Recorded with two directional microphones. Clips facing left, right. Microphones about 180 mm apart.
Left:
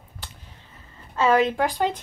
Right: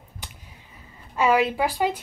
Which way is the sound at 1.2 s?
10° right (ahead or behind).